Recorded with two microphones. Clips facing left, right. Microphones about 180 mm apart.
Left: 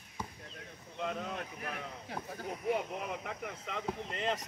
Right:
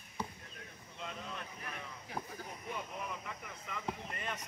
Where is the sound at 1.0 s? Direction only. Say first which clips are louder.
Left 8 dB; 60° left (ahead or behind); by 4.4 s 90° left.